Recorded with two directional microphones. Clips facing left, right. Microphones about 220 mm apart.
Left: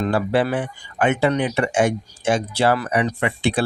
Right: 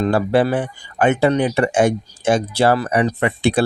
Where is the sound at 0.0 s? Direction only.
40° right (ahead or behind).